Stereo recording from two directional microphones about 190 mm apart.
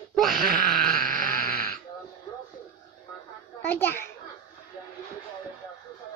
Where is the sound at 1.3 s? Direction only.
50° left (ahead or behind).